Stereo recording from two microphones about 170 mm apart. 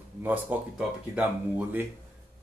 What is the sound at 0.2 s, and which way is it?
A man's voice, 10° right (ahead or behind).